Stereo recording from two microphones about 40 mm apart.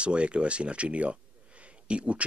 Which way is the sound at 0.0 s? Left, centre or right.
Right.